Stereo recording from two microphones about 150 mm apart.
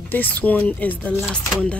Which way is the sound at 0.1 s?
10° left (ahead or behind).